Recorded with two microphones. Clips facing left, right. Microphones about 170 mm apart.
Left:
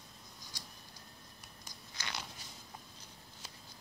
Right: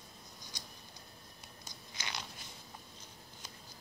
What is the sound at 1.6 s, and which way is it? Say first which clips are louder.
Biting: even; 15° right (ahead or behind).